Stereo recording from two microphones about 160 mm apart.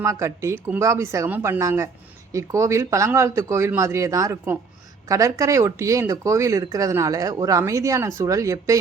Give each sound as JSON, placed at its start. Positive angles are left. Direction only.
{"t": 0.0, "sound": "speech", "side_deg": -20}